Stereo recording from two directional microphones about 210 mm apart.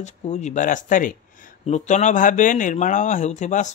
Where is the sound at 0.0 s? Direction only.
35° left (ahead or behind).